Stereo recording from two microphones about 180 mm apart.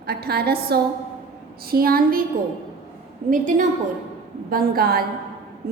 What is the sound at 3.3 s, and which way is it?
A woman's voice, 45° right (ahead or behind).